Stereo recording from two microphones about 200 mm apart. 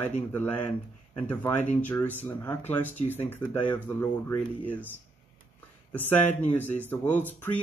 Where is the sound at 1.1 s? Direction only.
10° left (ahead or behind).